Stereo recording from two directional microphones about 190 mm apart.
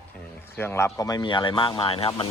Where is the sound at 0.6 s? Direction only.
10° left (ahead or behind); by 2.3 s 30° left (ahead or behind).